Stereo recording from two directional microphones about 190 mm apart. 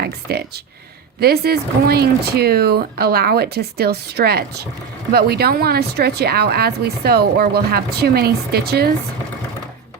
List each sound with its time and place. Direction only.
0.0 s speech: 55° right (ahead or behind)